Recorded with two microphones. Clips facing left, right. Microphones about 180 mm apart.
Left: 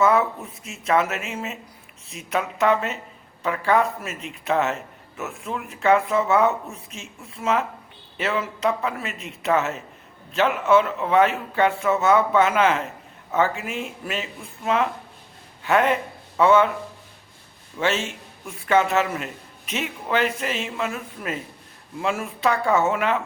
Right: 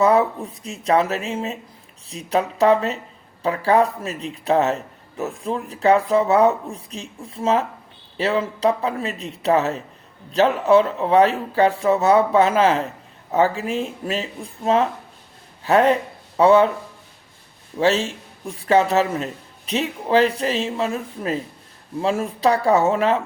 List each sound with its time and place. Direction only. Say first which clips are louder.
0.0 s speech: right 3 dB; 35° right (ahead or behind)
17.7 s speech: right 5 dB; 35° right (ahead or behind)